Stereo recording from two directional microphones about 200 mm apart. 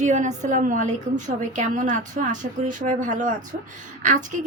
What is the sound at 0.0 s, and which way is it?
A woman's voice, 35° right (ahead or behind).